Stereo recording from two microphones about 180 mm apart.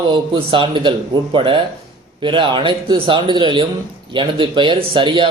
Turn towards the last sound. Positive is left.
turn(degrees=-25)  # may be behind; listen again after turning